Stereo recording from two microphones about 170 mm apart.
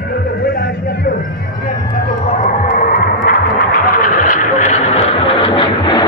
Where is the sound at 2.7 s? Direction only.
60° left (ahead or behind).